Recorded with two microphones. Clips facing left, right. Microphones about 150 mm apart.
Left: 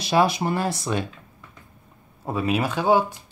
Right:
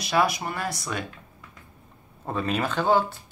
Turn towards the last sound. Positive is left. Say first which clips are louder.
# left 2 dB
turn(degrees=10)  # may be behind; listen again after turning